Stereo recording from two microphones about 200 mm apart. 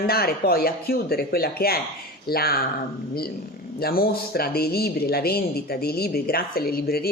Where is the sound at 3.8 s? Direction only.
50° left (ahead or behind).